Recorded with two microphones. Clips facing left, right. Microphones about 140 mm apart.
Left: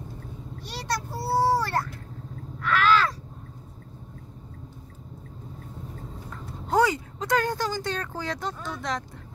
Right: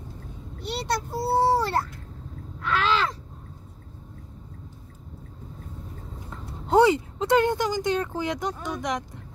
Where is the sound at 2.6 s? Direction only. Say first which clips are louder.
Left 2 dB; 20° right (ahead or behind).